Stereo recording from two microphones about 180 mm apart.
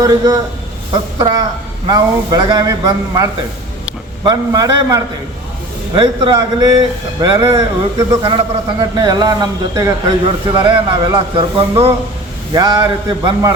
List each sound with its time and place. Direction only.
0.0 s a man's voice: 20° right (ahead or behind)